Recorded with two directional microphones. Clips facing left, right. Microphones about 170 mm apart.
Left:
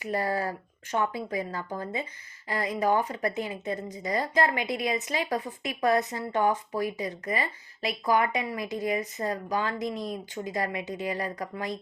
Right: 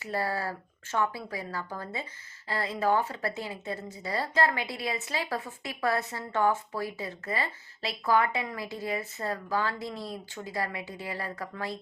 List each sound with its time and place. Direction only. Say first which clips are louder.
0.0 s speech: left 3 dB; 15° left (ahead or behind)